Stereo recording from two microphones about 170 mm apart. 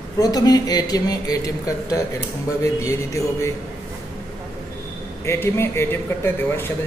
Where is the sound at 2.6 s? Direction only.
20° left (ahead or behind).